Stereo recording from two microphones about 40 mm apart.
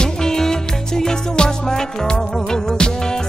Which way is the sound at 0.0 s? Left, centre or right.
Centre.